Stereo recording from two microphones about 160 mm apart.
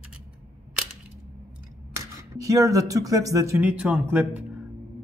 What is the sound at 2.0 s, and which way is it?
Speech, 20° right (ahead or behind).